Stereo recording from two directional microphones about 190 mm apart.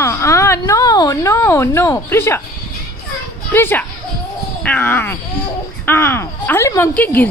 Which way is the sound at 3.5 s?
10° left (ahead or behind).